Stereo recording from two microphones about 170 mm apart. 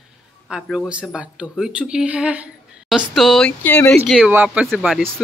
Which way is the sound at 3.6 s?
10° left (ahead or behind).